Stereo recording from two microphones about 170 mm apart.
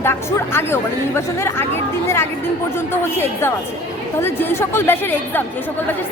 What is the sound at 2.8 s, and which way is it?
Speech, 15° left (ahead or behind).